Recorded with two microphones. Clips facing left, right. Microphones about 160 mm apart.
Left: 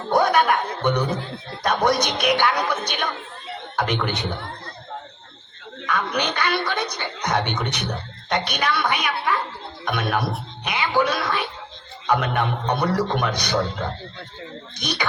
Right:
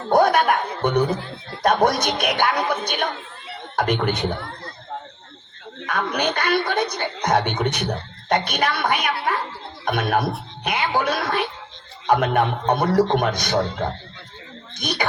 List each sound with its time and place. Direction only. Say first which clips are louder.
0.1 s chuckle: right 2 dB; 55° right (ahead or behind)
1.6 s a woman's voice: right 2 dB; 50° right (ahead or behind)
5.8 s a woman's voice: right 1 dB; 50° right (ahead or behind)